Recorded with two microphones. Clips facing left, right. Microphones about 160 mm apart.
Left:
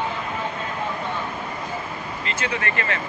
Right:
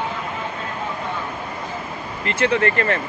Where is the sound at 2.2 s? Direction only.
60° right (ahead or behind).